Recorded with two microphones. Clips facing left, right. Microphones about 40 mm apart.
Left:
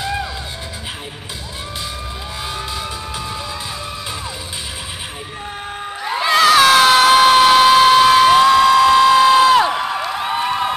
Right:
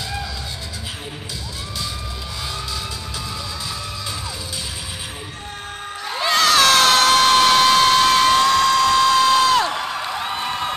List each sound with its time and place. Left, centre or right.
0.0 s music: left
6.0 s crowd: centre